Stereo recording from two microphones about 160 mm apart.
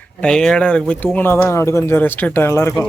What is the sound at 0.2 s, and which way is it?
Speech, 5° left (ahead or behind).